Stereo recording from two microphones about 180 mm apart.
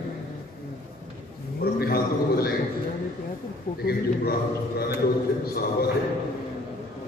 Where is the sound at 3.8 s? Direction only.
60° left (ahead or behind).